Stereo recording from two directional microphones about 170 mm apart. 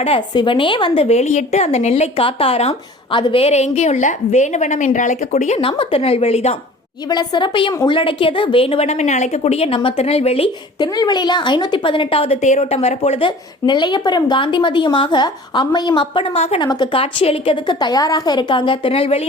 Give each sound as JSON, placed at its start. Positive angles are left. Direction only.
{"t": 0.0, "sound": "a woman's voice", "side_deg": 30}
{"t": 7.1, "sound": "a woman's voice", "side_deg": 25}
{"t": 16.6, "sound": "a woman's voice", "side_deg": 25}